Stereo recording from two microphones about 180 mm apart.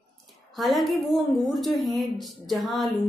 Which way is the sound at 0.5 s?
Centre (ahead or behind).